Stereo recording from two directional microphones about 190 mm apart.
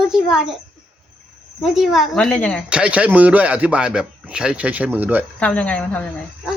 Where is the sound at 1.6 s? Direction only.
Centre (ahead or behind).